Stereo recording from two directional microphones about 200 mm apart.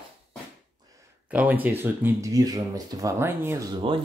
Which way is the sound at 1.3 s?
5° right (ahead or behind).